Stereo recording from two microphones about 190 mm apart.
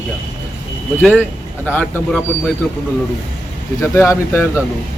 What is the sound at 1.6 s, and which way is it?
Speech, 10° left (ahead or behind).